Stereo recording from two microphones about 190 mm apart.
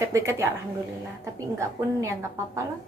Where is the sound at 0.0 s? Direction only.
15° right (ahead or behind).